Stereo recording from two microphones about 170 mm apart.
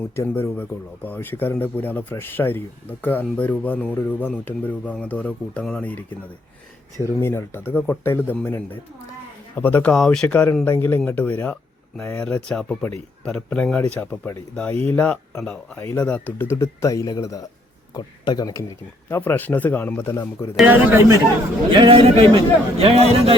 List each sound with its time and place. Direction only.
0.2 s a man's voice: 15° left (ahead or behind)
19.0 s speech: 15° left (ahead or behind)
20.6 s a man's voice: 10° right (ahead or behind)
21.7 s a man's voice: 30° right (ahead or behind)